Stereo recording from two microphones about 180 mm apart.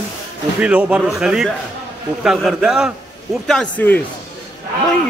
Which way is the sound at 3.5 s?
5° left (ahead or behind).